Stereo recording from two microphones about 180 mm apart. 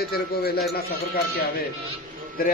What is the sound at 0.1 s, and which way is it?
A man's voice, 60° left (ahead or behind).